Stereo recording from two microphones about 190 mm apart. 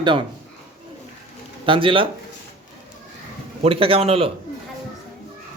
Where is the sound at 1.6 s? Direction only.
25° right (ahead or behind).